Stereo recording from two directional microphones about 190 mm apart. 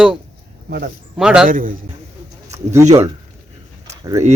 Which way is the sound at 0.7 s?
50° right (ahead or behind).